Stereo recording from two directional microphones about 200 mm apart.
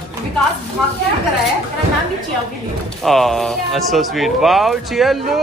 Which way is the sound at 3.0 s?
Centre (ahead or behind).